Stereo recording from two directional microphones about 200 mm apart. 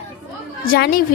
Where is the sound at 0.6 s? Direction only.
45° left (ahead or behind).